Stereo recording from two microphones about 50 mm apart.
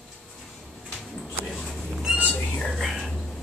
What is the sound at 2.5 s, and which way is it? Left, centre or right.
Whispering, centre.